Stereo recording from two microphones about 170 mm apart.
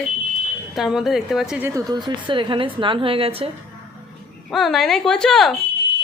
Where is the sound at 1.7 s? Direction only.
20° right (ahead or behind).